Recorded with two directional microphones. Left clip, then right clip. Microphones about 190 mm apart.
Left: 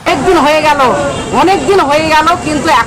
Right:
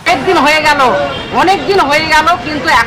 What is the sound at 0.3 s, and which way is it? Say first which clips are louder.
Speech: even; 5° left (ahead or behind).